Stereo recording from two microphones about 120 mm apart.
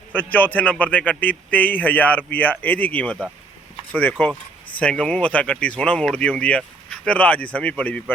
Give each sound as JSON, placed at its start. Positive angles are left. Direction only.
{"t": 0.1, "sound": "speech", "side_deg": 15}
{"t": 4.2, "sound": "speech", "side_deg": 15}